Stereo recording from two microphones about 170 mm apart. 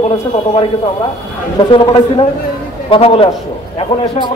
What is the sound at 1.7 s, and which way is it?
Speech, 30° left (ahead or behind).